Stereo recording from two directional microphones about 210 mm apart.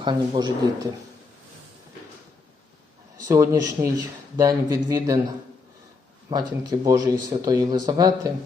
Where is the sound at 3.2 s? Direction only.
15° right (ahead or behind).